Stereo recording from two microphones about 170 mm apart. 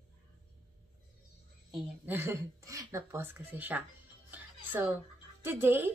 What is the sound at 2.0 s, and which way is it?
A woman's voice, 10° right (ahead or behind).